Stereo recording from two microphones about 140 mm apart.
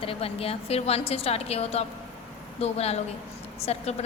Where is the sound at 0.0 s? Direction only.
40° left (ahead or behind).